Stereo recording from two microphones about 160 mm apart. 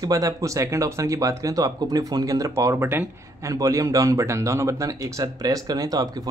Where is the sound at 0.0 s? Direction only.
20° right (ahead or behind).